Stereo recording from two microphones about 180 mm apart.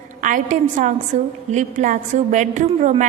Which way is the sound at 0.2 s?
45° right (ahead or behind).